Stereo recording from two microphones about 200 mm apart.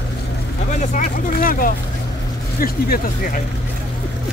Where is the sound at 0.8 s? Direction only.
40° left (ahead or behind).